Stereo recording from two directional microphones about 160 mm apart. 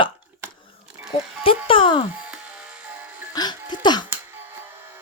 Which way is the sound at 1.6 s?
30° left (ahead or behind).